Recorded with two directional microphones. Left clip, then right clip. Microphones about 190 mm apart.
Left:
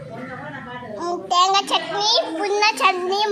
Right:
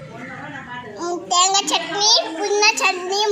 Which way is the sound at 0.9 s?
15° left (ahead or behind).